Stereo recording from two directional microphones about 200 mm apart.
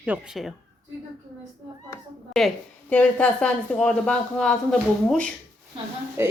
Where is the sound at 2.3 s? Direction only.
5° left (ahead or behind).